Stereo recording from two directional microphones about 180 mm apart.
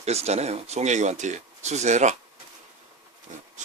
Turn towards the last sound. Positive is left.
turn(degrees=-45)  # may be behind; listen again after turning